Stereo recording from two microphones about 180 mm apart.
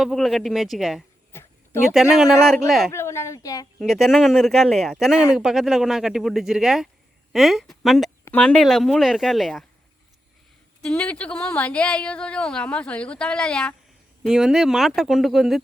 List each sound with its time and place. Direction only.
0.0 s speech: centre (ahead or behind)
1.3 s a sound: 15° left (ahead or behind)
1.9 s speech: 5° right (ahead or behind)
2.9 s a woman's voice: 15° left (ahead or behind)
3.8 s speech: centre (ahead or behind)
10.8 s speech: 5° left (ahead or behind)